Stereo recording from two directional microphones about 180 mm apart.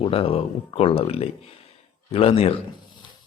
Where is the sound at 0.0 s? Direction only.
35° left (ahead or behind).